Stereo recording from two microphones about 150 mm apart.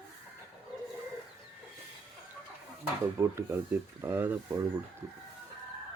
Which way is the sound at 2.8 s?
20° right (ahead or behind).